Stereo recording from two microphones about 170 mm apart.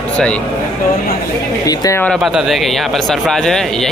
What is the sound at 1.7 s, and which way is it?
Speech, 20° left (ahead or behind).